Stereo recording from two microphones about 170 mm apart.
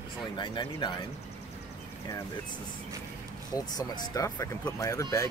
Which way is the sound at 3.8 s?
20° left (ahead or behind).